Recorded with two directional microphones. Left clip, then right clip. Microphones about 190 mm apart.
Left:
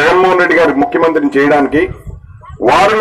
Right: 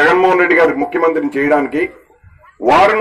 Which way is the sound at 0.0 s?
40° left (ahead or behind).